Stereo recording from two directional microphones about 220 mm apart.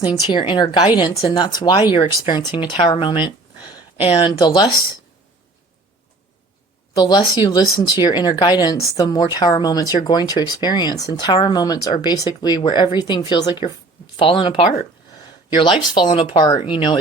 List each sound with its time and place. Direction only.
0.0 s speech: 20° left (ahead or behind)
6.9 s speech: 20° left (ahead or behind)